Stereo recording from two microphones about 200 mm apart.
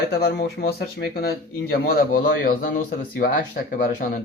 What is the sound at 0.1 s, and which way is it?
Speech, 55° left (ahead or behind).